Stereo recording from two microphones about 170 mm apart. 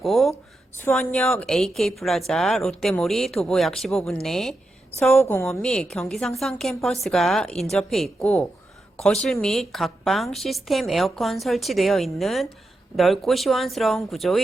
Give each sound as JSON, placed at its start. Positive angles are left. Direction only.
{"t": 0.0, "sound": "a sound", "side_deg": 0}
{"t": 0.9, "sound": "speech", "side_deg": 5}
{"t": 5.2, "sound": "a woman's voice", "side_deg": 15}
{"t": 5.5, "sound": "speech", "side_deg": 5}